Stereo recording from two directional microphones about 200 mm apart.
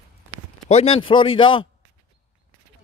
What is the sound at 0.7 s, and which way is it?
A man's voice, 30° left (ahead or behind).